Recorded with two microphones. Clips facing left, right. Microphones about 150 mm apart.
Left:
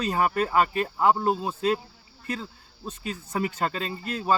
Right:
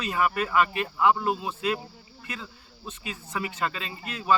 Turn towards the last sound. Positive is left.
turn(degrees=40)  # may be behind; listen again after turning